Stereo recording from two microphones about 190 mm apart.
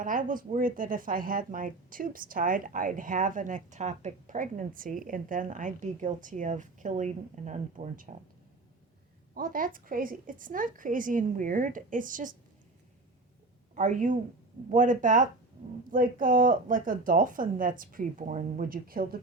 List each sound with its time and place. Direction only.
0.0 s speech: 45° right (ahead or behind)
9.3 s speech: 45° right (ahead or behind)
13.7 s speech: 40° right (ahead or behind)